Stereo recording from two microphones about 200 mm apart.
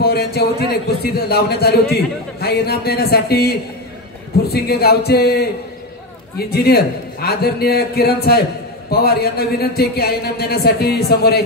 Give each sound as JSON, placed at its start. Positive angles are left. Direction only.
{"t": 0.0, "sound": "a man's voice", "side_deg": 50}